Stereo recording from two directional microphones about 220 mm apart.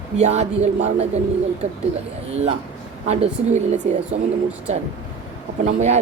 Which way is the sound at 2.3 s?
30° right (ahead or behind).